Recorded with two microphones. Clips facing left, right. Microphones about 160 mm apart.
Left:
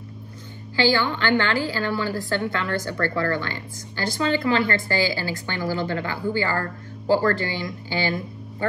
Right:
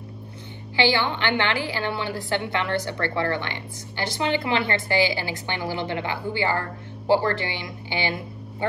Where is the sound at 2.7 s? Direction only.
45° left (ahead or behind).